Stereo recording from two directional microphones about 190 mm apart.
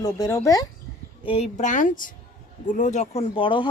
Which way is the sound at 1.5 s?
40° left (ahead or behind).